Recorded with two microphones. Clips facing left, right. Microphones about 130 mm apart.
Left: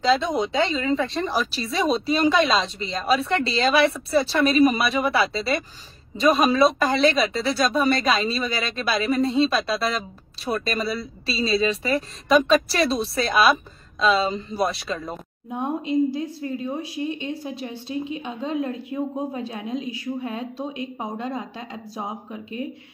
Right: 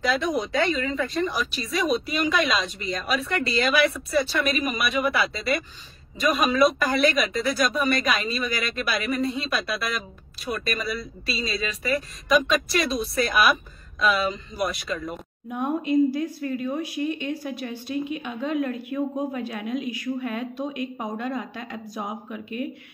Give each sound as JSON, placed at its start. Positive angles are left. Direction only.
{"t": 0.0, "sound": "speech", "side_deg": 25}